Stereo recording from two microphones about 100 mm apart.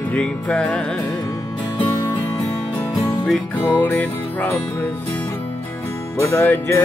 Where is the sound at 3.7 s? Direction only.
15° left (ahead or behind).